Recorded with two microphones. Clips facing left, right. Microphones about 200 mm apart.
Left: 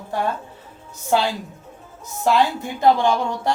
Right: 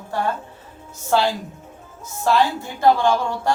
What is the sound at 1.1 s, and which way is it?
A woman's voice, 15° left (ahead or behind).